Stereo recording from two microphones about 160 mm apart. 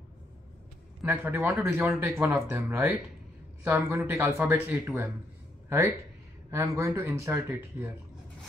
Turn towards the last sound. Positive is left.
turn(degrees=-15)  # may be behind; listen again after turning